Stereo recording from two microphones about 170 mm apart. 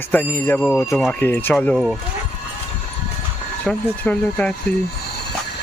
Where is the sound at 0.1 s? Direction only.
15° left (ahead or behind).